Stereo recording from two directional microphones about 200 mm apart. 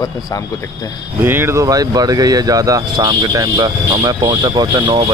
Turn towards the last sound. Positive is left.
turn(degrees=-20)  # may be behind; listen again after turning